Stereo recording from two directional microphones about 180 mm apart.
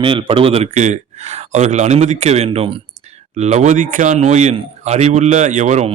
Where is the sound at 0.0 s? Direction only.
30° right (ahead or behind).